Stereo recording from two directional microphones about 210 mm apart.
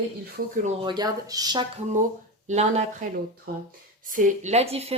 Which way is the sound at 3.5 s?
45° right (ahead or behind).